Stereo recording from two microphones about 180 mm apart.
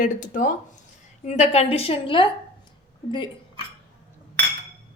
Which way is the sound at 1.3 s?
35° left (ahead or behind).